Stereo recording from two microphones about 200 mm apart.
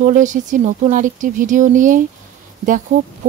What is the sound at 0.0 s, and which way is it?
Speech, 40° right (ahead or behind).